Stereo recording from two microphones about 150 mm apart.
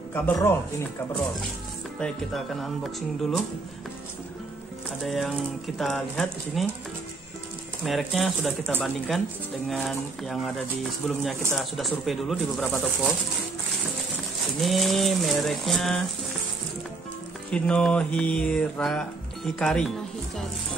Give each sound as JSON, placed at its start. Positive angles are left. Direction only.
{"t": 0.1, "sound": "speech", "side_deg": 15}
{"t": 2.0, "sound": "mantra", "side_deg": 5}
{"t": 5.0, "sound": "mantra", "side_deg": 0}
{"t": 7.8, "sound": "mantra", "side_deg": 0}
{"t": 11.5, "sound": "mantra", "side_deg": 0}
{"t": 14.6, "sound": "mantra", "side_deg": 0}
{"t": 17.5, "sound": "mantra", "side_deg": 5}